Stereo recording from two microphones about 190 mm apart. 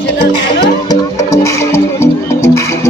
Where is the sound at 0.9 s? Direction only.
15° left (ahead or behind).